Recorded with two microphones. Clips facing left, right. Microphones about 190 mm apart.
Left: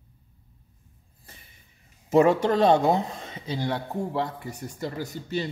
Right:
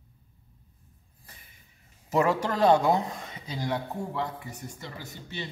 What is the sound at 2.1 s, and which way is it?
A man's voice, 25° left (ahead or behind).